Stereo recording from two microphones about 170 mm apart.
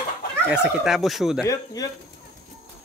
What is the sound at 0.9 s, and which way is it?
Speech, centre (ahead or behind).